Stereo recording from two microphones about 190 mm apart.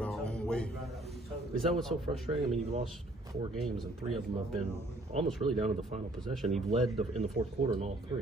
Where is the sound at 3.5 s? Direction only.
Centre (ahead or behind).